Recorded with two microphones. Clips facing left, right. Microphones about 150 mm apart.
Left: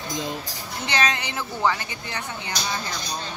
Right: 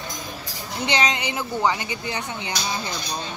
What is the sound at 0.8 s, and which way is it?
A woman's voice, 20° right (ahead or behind).